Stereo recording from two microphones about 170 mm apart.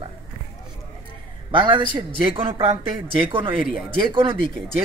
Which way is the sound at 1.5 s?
30° right (ahead or behind).